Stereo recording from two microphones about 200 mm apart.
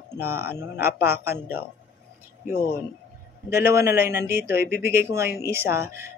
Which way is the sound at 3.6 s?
10° right (ahead or behind).